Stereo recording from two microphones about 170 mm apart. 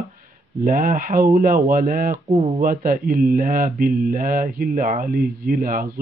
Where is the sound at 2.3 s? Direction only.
35° right (ahead or behind).